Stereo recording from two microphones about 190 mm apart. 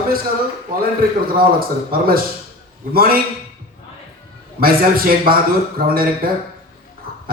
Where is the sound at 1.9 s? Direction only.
50° right (ahead or behind).